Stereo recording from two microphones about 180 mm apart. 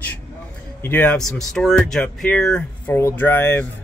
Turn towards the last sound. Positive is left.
turn(degrees=10)  # may be behind; listen again after turning